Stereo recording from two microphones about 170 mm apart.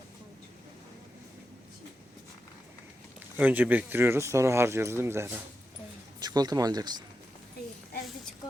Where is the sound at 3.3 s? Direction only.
10° right (ahead or behind).